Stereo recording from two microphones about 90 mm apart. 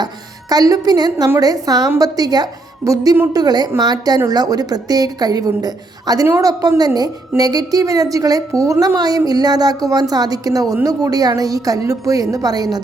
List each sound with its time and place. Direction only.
0.0 s a woman's voice: 45° right (ahead or behind)
3.3 s a woman's voice: 50° right (ahead or behind); by 9.0 s 35° right (ahead or behind)
9.0 s a woman's voice: 45° right (ahead or behind)